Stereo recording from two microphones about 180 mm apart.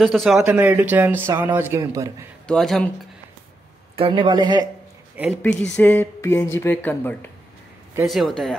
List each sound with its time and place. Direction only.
0.0 s a man's voice: centre (ahead or behind); by 2.2 s 20° right (ahead or behind)
2.4 s speech: centre (ahead or behind)
3.9 s speech: 30° right (ahead or behind)
5.2 s a man's voice: 10° right (ahead or behind)
5.6 s speech: 10° left (ahead or behind)
8.0 s speech: centre (ahead or behind)